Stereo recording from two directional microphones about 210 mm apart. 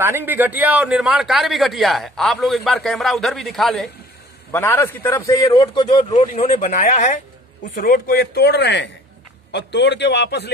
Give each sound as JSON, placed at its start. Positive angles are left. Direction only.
{"t": 0.0, "sound": "a man's voice", "side_deg": -10}
{"t": 6.5, "sound": "speech", "side_deg": 35}
{"t": 7.7, "sound": "a man's voice", "side_deg": 45}